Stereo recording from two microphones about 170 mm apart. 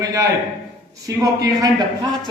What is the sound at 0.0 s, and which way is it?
A man's voice, 20° right (ahead or behind).